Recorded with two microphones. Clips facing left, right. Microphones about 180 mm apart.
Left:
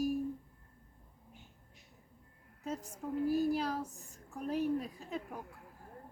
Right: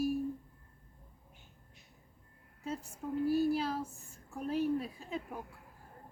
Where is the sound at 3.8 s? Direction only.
20° left (ahead or behind).